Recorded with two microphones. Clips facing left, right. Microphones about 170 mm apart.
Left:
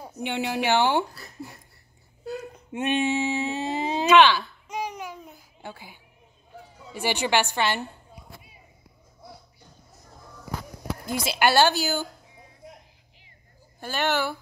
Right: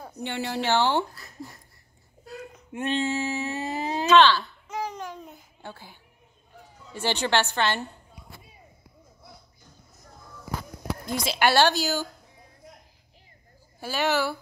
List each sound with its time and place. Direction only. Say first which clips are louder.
0.0 s speech: left 3 dB; 15° left (ahead or behind)
2.2 s a sound: left 6 dB; 25° left (ahead or behind)
4.1 s babbling: even; 10° left (ahead or behind)
5.6 s a woman's voice: left 2 dB; 10° left (ahead or behind)
11.1 s a woman's voice: left 1 dB; 5° left (ahead or behind)
13.7 s a woman's voice: right 1 dB; 5° right (ahead or behind)